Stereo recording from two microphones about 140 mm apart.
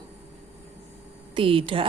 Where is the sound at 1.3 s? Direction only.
40° right (ahead or behind).